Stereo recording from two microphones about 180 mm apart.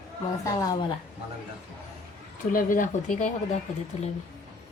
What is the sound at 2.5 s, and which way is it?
Speech, 50° left (ahead or behind).